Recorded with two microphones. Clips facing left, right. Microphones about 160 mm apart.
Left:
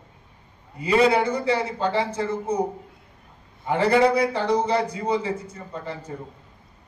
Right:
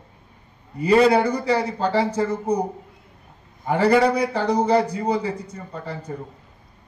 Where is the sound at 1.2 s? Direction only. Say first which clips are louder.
Right 2 dB; 35° right (ahead or behind).